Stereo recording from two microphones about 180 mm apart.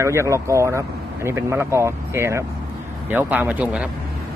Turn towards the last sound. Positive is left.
turn(degrees=-5)  # may be behind; listen again after turning